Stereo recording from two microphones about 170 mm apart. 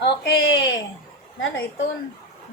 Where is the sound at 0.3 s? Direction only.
90° left.